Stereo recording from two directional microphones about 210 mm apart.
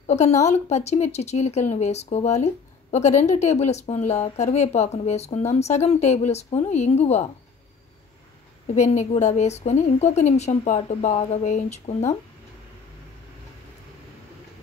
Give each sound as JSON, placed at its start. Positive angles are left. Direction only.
{"t": 0.0, "sound": "speech", "side_deg": 30}
{"t": 8.7, "sound": "speech", "side_deg": 35}